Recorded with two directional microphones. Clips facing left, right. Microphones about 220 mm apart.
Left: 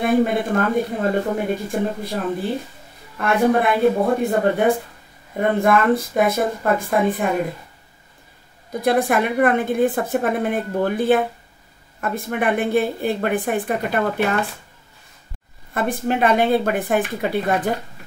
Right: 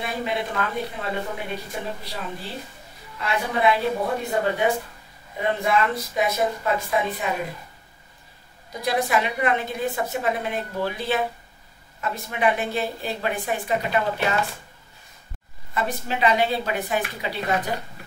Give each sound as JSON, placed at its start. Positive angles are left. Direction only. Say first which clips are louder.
{"t": 0.0, "sound": "speech", "louder": "left 10 dB", "side_deg": 50}
{"t": 8.8, "sound": "speech", "louder": "left 5 dB", "side_deg": 50}
{"t": 15.7, "sound": "speech", "louder": "left 6 dB", "side_deg": 50}